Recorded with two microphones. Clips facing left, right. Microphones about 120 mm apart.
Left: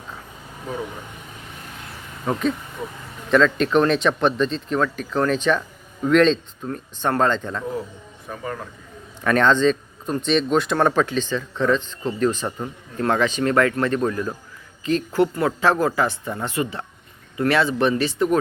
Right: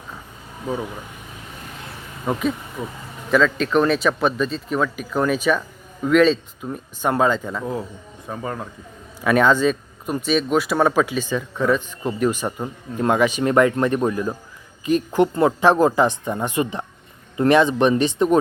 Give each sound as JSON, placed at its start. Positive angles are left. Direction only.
{"t": 2.2, "sound": "speech", "side_deg": -5}
{"t": 8.3, "sound": "speech", "side_deg": -25}
{"t": 9.2, "sound": "speech", "side_deg": -10}